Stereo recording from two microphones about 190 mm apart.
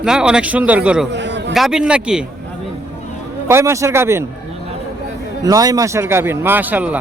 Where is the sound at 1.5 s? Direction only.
Centre (ahead or behind).